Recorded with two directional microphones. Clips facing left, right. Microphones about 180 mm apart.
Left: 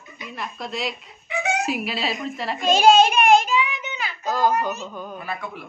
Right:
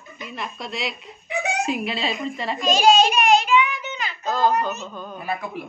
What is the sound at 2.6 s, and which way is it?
Speech, 55° left (ahead or behind).